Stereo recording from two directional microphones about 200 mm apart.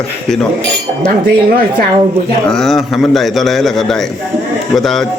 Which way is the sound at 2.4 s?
Centre (ahead or behind).